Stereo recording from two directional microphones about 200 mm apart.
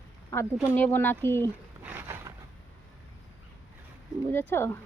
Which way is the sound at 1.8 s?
10° right (ahead or behind).